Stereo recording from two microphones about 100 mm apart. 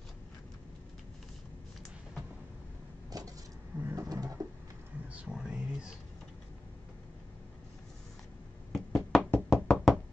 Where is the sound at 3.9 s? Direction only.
35° right (ahead or behind).